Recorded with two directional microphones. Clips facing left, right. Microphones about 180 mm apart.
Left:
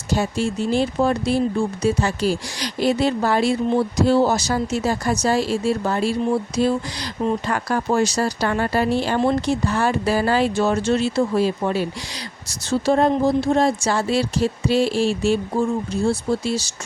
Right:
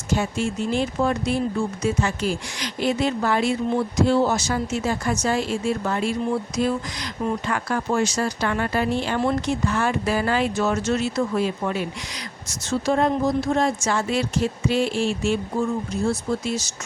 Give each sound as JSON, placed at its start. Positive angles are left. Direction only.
{"t": 0.1, "sound": "speech", "side_deg": 35}